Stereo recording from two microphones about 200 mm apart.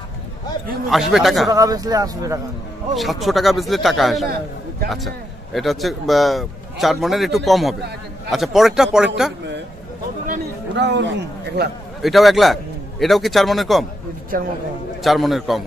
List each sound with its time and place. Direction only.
0.8 s speech: centre (ahead or behind)
1.5 s a man's voice: 20° right (ahead or behind)
3.0 s speech: centre (ahead or behind)
10.7 s a man's voice: 60° right (ahead or behind)
12.0 s speech: centre (ahead or behind)
14.3 s speech: 45° right (ahead or behind)
15.0 s speech: centre (ahead or behind)